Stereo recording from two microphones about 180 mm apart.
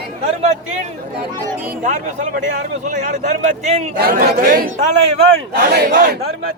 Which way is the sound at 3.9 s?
60° right (ahead or behind).